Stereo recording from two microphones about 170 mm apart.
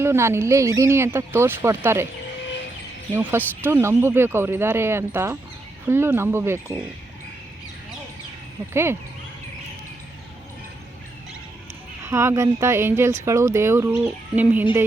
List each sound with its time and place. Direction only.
0.0 s speech: 15° right (ahead or behind)
3.2 s speech: 10° right (ahead or behind)
8.7 s speech: 15° right (ahead or behind)
12.0 s speech: 15° right (ahead or behind)